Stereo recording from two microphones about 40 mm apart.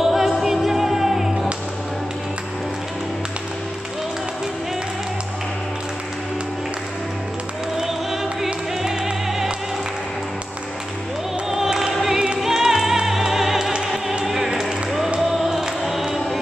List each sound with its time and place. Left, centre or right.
0.0 s music: centre
7.7 s music: centre
11.5 s music: centre